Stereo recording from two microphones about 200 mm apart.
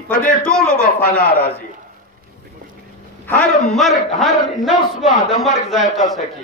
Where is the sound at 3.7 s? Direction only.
Centre (ahead or behind).